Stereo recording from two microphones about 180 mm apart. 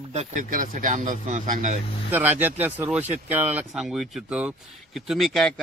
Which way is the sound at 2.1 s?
10° right (ahead or behind).